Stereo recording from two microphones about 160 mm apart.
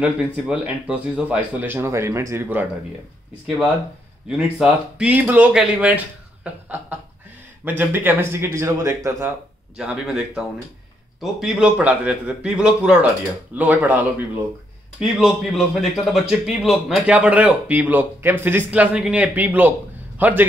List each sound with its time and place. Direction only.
0.0 s a man's voice: 10° right (ahead or behind)
4.3 s a man's voice: 5° right (ahead or behind)
6.4 s a sound: 10° right (ahead or behind)
7.6 s a man's voice: 10° right (ahead or behind)
9.8 s a man's voice: 5° right (ahead or behind)